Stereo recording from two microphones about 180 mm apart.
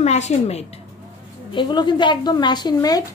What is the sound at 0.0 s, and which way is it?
Speech, 40° left (ahead or behind).